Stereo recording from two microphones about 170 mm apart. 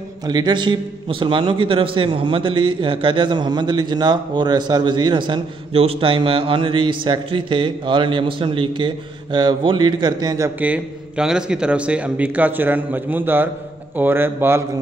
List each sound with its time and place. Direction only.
0.3 s a man's voice: 25° right (ahead or behind)
10.6 s a man's voice: 5° right (ahead or behind)